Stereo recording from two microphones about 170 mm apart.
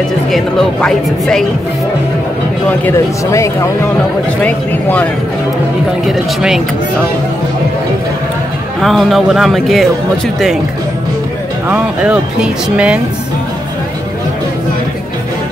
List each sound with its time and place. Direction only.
0.3 s speech: 5° left (ahead or behind)
2.8 s speech: 20° left (ahead or behind)
6.0 s speech: centre (ahead or behind)
8.8 s speech: centre (ahead or behind)
11.7 s speech: 5° right (ahead or behind)